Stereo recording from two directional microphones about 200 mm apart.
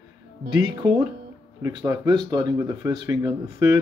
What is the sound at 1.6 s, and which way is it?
Speech, 15° right (ahead or behind).